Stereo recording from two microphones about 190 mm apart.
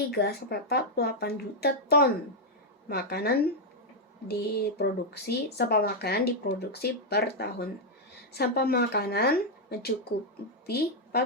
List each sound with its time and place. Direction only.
0.1 s a woman's voice: 55° left (ahead or behind)